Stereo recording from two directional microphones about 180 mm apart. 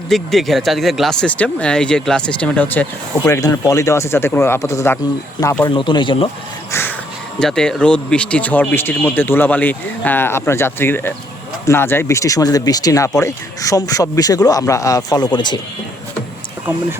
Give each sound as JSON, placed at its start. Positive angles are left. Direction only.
{"t": 0.1, "sound": "speech", "side_deg": 0}
{"t": 6.7, "sound": "a sound", "side_deg": 15}
{"t": 7.3, "sound": "speech", "side_deg": 5}